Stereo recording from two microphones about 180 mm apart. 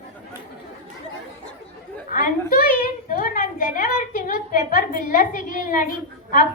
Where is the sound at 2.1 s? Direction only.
50° left (ahead or behind).